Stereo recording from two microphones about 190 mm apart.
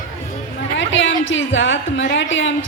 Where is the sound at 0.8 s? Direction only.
80° left.